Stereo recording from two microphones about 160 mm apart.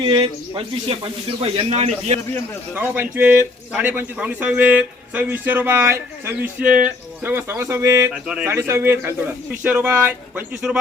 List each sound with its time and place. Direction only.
0.0 s speech: 30° right (ahead or behind)
2.7 s a man's voice: 10° right (ahead or behind)
8.1 s speech: 5° right (ahead or behind)
8.4 s a man's voice: 15° right (ahead or behind)